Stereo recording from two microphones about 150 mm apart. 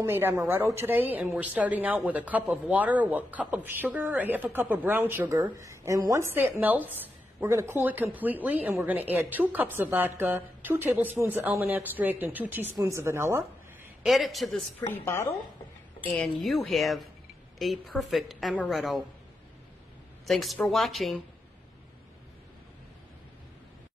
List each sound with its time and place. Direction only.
0.0 s speech: 15° right (ahead or behind)
14.0 s a woman's voice: centre (ahead or behind)
15.0 s speech: 15° left (ahead or behind)
16.2 s a woman's voice: centre (ahead or behind)
20.2 s a woman's voice: centre (ahead or behind)